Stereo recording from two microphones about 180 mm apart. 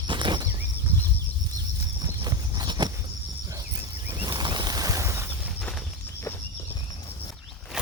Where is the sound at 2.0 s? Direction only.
20° right (ahead or behind).